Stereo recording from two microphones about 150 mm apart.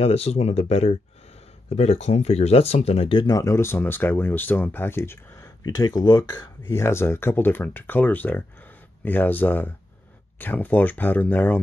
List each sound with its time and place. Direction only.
0.0 s speech: 45° left (ahead or behind); by 5.9 s 15° left (ahead or behind)
5.9 s speech: 30° left (ahead or behind)
6.3 s speech: 15° left (ahead or behind)